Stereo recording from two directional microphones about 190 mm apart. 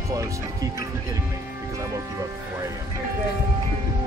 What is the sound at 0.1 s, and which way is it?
Speech, 15° right (ahead or behind).